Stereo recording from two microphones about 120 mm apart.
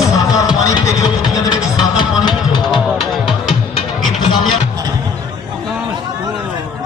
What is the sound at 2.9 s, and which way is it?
Music, centre (ahead or behind).